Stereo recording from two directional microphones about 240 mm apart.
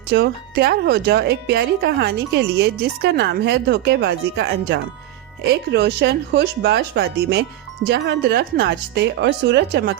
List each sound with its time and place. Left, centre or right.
0.1 s speech: right